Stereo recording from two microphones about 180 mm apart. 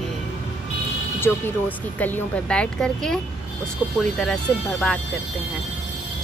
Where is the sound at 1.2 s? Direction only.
10° left (ahead or behind).